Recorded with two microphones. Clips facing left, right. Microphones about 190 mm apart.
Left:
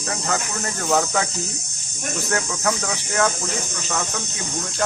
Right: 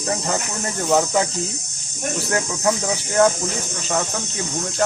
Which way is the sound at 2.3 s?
25° right (ahead or behind).